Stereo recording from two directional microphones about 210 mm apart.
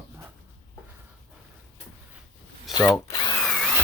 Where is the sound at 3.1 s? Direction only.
20° left (ahead or behind).